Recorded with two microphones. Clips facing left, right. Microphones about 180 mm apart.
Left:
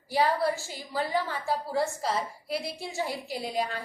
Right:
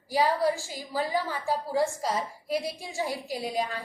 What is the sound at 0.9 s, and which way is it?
A woman's voice, 10° right (ahead or behind).